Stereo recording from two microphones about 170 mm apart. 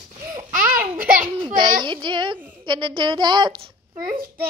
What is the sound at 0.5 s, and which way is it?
Babbling, 55° right (ahead or behind).